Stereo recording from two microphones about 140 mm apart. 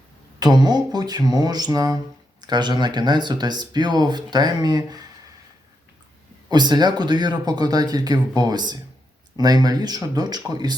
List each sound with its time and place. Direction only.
0.3 s speech: 30° right (ahead or behind)
6.5 s speech: 30° right (ahead or behind)